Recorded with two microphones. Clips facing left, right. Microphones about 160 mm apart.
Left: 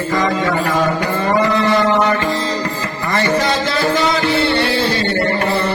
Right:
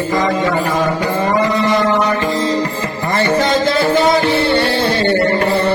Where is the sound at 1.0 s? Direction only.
20° right (ahead or behind).